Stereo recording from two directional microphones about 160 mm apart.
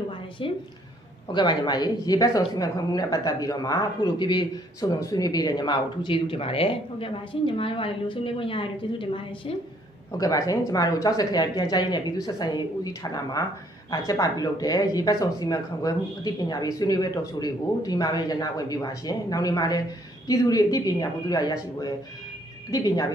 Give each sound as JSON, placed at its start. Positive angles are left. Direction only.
{"t": 1.3, "sound": "speech", "side_deg": 30}